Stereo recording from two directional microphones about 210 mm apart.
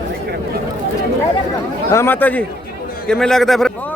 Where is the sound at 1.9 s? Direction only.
10° left (ahead or behind).